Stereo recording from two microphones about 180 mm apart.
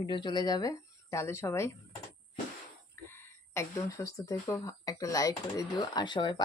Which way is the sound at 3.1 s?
15° left (ahead or behind).